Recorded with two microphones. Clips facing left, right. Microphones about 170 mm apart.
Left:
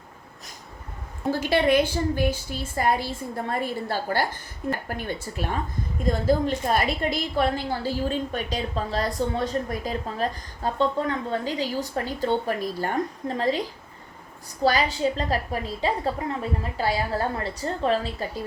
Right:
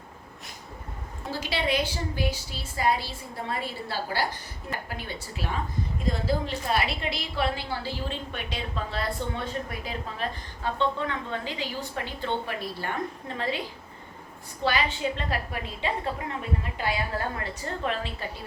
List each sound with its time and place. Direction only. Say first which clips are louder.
1.3 s a woman's voice: left 8 dB; 50° left (ahead or behind)
14.6 s a woman's voice: left 5 dB; 40° left (ahead or behind)